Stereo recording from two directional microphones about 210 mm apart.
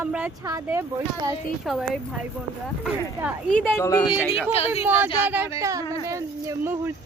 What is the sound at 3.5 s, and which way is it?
Speech, 5° left (ahead or behind).